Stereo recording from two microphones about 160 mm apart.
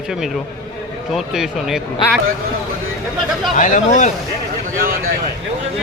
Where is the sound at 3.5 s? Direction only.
55° left (ahead or behind).